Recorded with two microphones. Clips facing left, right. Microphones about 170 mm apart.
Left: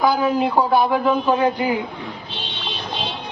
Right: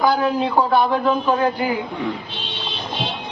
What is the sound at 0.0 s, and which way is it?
A man's voice, centre (ahead or behind).